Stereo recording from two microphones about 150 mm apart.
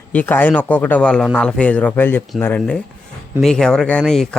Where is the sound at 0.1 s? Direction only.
10° left (ahead or behind).